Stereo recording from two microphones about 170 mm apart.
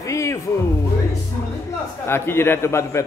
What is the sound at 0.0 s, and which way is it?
Music, 20° left (ahead or behind).